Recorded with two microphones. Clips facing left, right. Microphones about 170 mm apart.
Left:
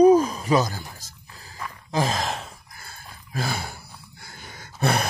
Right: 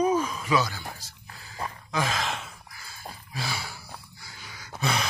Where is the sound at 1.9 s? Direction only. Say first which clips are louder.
Left 5 dB; 35° left (ahead or behind).